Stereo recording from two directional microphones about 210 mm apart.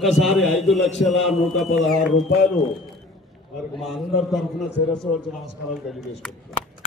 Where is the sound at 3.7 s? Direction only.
Centre (ahead or behind).